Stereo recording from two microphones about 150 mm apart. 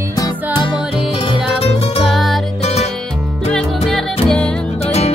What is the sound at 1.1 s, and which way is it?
Music, 40° left (ahead or behind).